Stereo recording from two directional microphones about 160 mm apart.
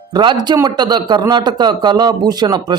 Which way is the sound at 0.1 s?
30° right (ahead or behind).